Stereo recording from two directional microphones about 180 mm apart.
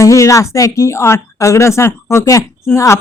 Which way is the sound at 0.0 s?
15° left (ahead or behind).